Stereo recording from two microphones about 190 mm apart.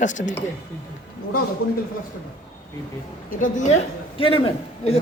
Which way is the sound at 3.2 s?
45° left (ahead or behind).